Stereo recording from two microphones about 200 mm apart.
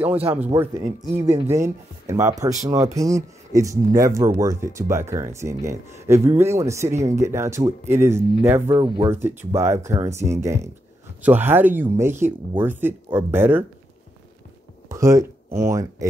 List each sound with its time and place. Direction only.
0.5 s speech: 15° right (ahead or behind)
0.8 s speech: 35° right (ahead or behind)
1.5 s speech: 15° right (ahead or behind)
9.1 s speech: 10° right (ahead or behind)
14.9 s speech: 15° right (ahead or behind)